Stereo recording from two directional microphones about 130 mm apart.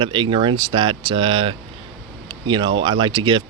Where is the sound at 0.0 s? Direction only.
40° right (ahead or behind).